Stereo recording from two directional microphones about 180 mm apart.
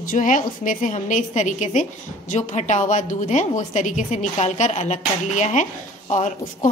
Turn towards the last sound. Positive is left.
turn(degrees=45)  # may be behind; listen again after turning